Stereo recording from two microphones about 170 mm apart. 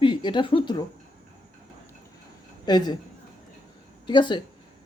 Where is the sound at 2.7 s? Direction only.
25° left (ahead or behind).